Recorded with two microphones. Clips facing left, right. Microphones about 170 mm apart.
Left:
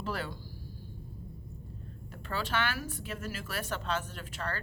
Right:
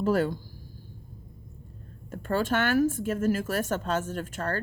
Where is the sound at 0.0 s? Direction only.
45° right (ahead or behind).